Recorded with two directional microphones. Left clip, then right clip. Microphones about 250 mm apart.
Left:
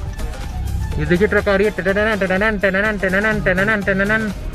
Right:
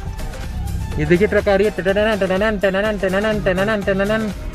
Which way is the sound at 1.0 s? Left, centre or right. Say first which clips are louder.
Right 1 dB; centre.